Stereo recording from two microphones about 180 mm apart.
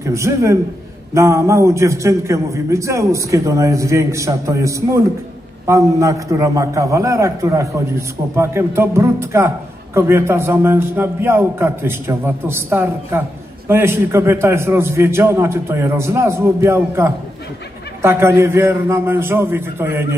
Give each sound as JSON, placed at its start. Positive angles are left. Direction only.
{"t": 0.0, "sound": "a man's voice", "side_deg": -15}